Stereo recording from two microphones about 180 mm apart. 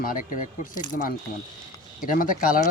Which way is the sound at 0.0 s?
50° left (ahead or behind).